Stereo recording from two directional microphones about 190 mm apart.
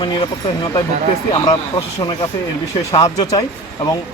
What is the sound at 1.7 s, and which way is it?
Speech, 20° left (ahead or behind).